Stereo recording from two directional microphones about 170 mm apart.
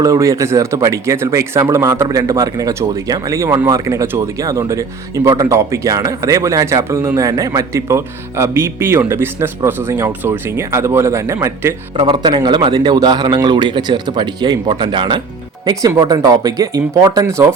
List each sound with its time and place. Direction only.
0.0 s speech: 20° right (ahead or behind)
11.9 s speech: 25° right (ahead or behind)